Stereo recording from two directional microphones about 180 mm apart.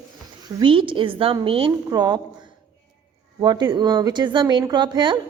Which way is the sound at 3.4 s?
25° right (ahead or behind).